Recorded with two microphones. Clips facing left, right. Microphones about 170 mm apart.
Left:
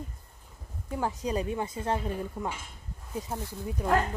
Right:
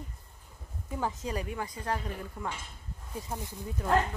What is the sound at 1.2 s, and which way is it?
A woman's voice, 20° left (ahead or behind).